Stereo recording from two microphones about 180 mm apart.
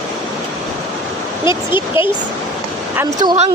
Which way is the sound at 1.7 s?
30° left (ahead or behind).